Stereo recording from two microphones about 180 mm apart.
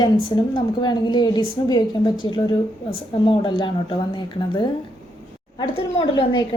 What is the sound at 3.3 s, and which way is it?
Speech, 25° left (ahead or behind).